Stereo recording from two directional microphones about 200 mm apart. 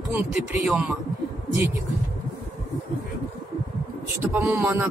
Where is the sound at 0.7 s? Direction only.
5° right (ahead or behind).